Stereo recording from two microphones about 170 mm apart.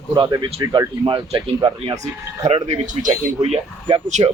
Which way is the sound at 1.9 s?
40° right (ahead or behind).